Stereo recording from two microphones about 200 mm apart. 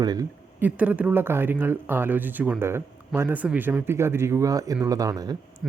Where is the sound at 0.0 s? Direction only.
20° right (ahead or behind).